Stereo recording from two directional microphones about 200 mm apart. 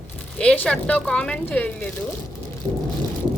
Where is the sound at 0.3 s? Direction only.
5° left (ahead or behind).